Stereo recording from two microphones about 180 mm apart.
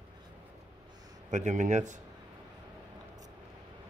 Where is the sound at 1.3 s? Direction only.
40° right (ahead or behind).